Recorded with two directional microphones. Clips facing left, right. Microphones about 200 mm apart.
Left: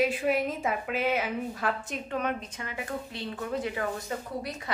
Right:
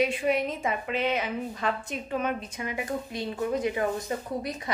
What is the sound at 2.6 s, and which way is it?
A woman's voice, 15° right (ahead or behind).